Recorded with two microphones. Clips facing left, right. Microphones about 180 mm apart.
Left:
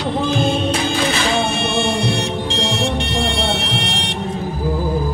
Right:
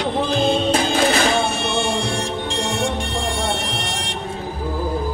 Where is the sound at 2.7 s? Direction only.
75° left (ahead or behind).